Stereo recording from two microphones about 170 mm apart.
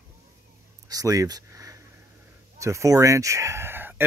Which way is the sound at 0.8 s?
20° right (ahead or behind).